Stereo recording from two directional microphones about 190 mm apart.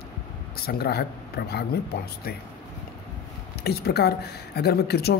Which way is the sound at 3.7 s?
60° left (ahead or behind).